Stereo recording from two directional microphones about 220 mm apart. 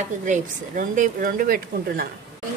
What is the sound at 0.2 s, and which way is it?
A woman's voice, 35° right (ahead or behind).